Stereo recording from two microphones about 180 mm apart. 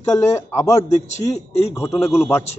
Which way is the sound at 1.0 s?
40° left (ahead or behind).